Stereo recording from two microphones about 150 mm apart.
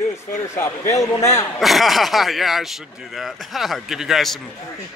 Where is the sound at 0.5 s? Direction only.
15° left (ahead or behind).